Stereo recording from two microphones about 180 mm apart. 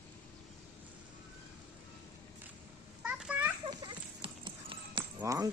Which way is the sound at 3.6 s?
30° right (ahead or behind).